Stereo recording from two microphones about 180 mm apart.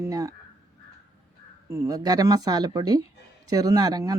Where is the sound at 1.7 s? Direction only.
20° right (ahead or behind).